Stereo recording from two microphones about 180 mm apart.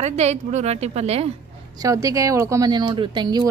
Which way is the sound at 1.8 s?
20° right (ahead or behind).